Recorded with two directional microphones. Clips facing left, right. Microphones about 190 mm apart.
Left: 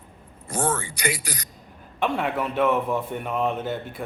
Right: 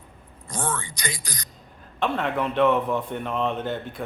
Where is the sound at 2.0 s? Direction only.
10° left (ahead or behind).